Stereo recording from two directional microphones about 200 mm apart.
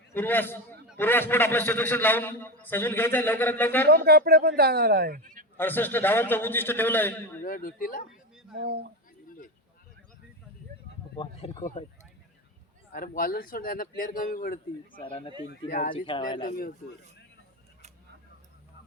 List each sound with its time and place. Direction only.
0.1 s a man's voice: 10° left (ahead or behind)
3.8 s speech: 50° right (ahead or behind)
5.5 s a man's voice: 10° left (ahead or behind)
7.4 s a man's voice: 45° left (ahead or behind)
8.5 s speech: 55° right (ahead or behind)
11.2 s speech: 25° left (ahead or behind)
12.9 s a man's voice: 45° left (ahead or behind)
14.9 s speech: 25° left (ahead or behind)
16.4 s a man's voice: 45° left (ahead or behind)